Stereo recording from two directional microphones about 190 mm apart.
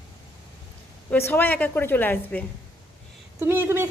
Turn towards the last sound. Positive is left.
turn(degrees=-10)  # may be behind; listen again after turning